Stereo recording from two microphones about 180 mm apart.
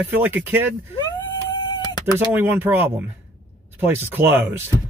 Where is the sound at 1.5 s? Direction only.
20° left (ahead or behind).